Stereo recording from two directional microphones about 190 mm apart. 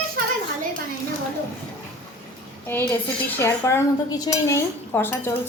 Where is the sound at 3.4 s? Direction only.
15° left (ahead or behind).